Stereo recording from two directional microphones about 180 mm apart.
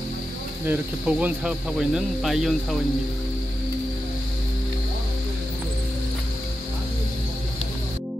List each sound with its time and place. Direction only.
0.7 s speech: 10° right (ahead or behind)